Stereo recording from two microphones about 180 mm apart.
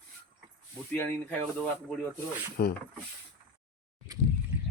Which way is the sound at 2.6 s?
60° left (ahead or behind).